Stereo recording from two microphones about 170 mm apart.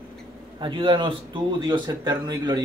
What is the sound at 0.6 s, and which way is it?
Speech, 30° right (ahead or behind).